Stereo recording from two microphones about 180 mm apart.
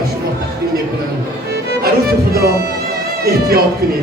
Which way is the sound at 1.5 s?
60° right (ahead or behind).